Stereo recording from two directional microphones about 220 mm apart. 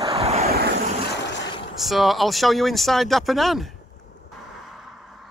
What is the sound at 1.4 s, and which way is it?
Vehicle, 25° left (ahead or behind).